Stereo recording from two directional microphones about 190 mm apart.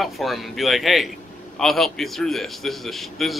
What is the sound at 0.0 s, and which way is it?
Speech, centre (ahead or behind).